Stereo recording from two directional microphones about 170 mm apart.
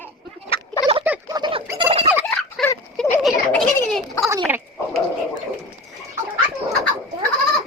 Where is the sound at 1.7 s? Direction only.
30° right (ahead or behind).